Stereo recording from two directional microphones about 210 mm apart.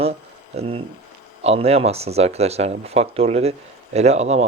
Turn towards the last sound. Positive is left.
turn(degrees=-30)  # may be behind; listen again after turning